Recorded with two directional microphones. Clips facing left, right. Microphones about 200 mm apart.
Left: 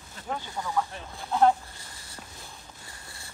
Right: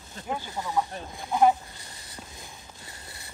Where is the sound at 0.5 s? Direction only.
20° right (ahead or behind).